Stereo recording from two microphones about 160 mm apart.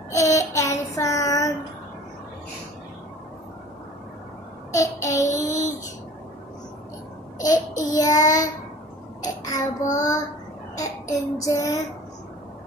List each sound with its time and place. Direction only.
0.1 s child singing: 20° left (ahead or behind)
4.7 s child singing: 20° left (ahead or behind)
5.4 s a sound: 50° left (ahead or behind)
7.7 s child singing: 20° left (ahead or behind)
8.2 s child singing: 50° left (ahead or behind)
9.2 s child singing: 20° left (ahead or behind)
10.8 s a sound: 20° left (ahead or behind)